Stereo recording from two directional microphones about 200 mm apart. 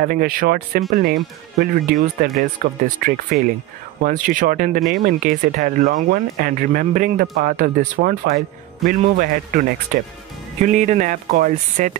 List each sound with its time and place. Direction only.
0.0 s speech: 45° right (ahead or behind)